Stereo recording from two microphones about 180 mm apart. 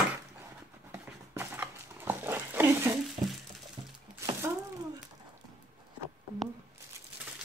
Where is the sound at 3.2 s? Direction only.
40° right (ahead or behind).